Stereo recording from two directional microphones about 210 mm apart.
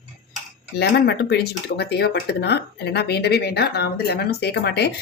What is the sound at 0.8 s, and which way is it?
Speech, 50° left (ahead or behind).